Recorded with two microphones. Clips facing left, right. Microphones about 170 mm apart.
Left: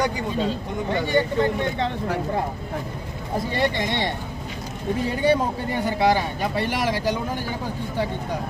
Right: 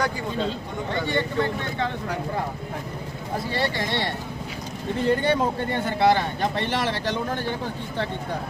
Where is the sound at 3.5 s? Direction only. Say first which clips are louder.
Left 2 dB; 20° left (ahead or behind).